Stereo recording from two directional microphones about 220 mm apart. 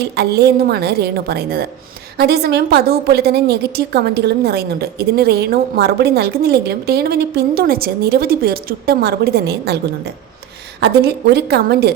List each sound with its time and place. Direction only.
0.0 s a woman's voice: 45° right (ahead or behind)
10.8 s a woman's voice: 45° right (ahead or behind)